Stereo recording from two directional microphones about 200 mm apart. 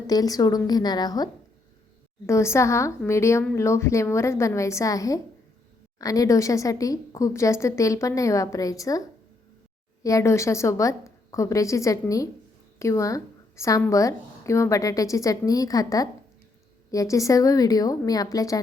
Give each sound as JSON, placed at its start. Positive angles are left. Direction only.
{"t": 0.1, "sound": "a woman's voice", "side_deg": 20}